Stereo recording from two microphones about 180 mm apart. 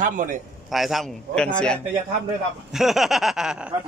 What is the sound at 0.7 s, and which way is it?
A man's voice, centre (ahead or behind).